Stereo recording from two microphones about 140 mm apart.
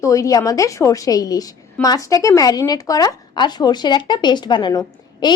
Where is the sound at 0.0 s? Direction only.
25° left (ahead or behind).